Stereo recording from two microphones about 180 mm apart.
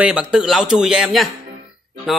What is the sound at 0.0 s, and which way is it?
Speech, 5° right (ahead or behind).